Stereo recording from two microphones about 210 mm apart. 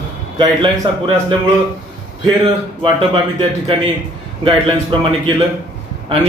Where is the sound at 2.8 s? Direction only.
25° right (ahead or behind).